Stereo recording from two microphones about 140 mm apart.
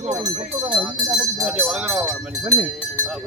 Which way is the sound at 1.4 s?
5° right (ahead or behind).